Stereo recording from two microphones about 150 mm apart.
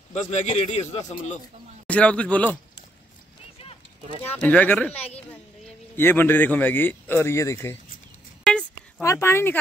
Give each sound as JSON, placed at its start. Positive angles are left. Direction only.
{"t": 0.1, "sound": "a man's voice", "side_deg": 50}
{"t": 1.9, "sound": "speech", "side_deg": 10}
{"t": 4.4, "sound": "speech", "side_deg": 10}
{"t": 5.9, "sound": "speech", "side_deg": 15}
{"t": 8.5, "sound": "a sound", "side_deg": 0}
{"t": 9.0, "sound": "speech", "side_deg": 20}